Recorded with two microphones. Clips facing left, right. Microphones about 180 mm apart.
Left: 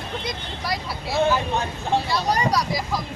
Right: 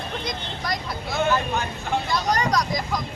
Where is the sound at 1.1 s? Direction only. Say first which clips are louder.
Left 2 dB; 30° left (ahead or behind).